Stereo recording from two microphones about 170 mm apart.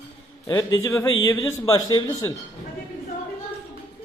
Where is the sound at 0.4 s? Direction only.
20° left (ahead or behind).